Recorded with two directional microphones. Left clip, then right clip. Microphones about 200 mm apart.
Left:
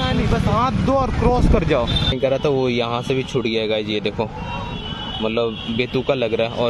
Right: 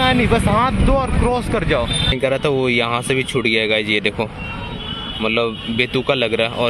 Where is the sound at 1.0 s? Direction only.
15° left (ahead or behind).